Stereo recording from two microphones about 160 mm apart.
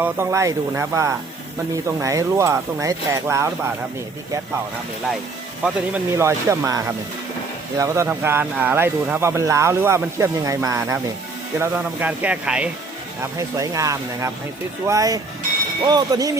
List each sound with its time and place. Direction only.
0.0 s speech: 15° right (ahead or behind)
5.6 s speech: 10° right (ahead or behind)
13.6 s speech: 20° right (ahead or behind)